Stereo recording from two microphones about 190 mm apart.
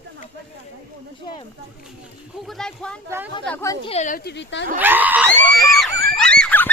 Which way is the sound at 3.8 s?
35° left (ahead or behind).